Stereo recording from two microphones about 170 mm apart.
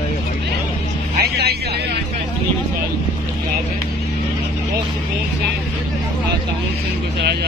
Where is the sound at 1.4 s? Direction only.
70° right (ahead or behind).